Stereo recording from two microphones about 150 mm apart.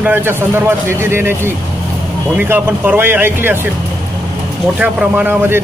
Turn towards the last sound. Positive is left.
turn(degrees=-10)  # may be behind; listen again after turning